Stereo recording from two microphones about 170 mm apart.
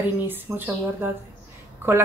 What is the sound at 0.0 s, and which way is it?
Speech, 10° right (ahead or behind).